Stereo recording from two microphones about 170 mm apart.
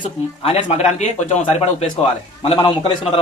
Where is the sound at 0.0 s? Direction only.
35° left (ahead or behind).